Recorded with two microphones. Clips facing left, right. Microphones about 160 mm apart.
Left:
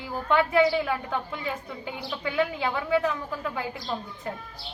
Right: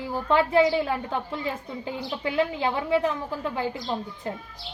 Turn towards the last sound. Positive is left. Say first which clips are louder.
# right 2 dB
turn(degrees=-30)  # may be behind; listen again after turning